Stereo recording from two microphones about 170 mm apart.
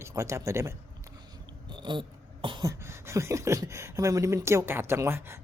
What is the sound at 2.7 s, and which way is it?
Speech, 15° right (ahead or behind).